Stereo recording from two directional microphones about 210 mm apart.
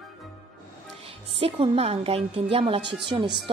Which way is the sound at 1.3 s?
25° right (ahead or behind).